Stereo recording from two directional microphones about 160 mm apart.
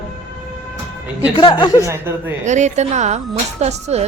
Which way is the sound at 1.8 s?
15° right (ahead or behind).